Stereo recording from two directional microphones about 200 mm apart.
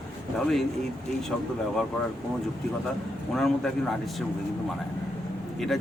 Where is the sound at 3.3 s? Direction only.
Centre (ahead or behind).